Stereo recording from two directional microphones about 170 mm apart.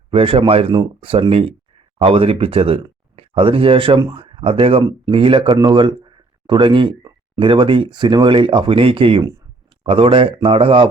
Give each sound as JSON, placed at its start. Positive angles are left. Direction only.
{"t": 0.1, "sound": "speech", "side_deg": -35}